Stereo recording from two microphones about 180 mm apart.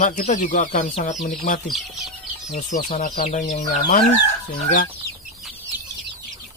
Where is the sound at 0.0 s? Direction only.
45° left (ahead or behind).